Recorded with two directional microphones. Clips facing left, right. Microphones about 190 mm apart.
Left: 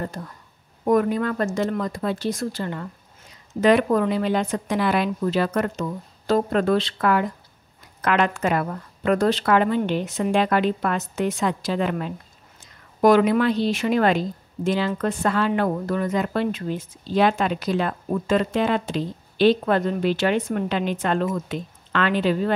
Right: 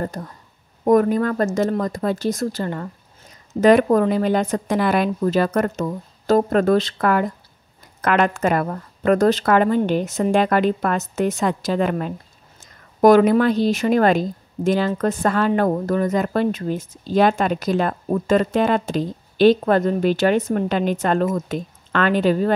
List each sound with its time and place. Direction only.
0.0 s a woman's voice: 40° right (ahead or behind)